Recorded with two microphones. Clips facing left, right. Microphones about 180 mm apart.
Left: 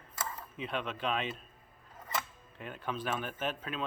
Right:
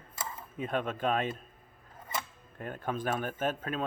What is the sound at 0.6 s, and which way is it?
Speech, 45° right (ahead or behind).